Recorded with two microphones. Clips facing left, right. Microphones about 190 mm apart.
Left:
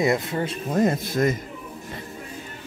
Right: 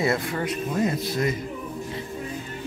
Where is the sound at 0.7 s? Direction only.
45° left (ahead or behind).